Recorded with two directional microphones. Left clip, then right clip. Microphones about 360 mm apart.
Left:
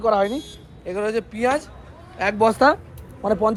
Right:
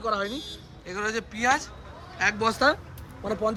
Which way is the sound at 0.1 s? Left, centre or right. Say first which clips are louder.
Left 8 dB; centre.